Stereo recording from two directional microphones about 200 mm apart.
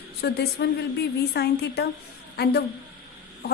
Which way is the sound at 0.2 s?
55° left (ahead or behind).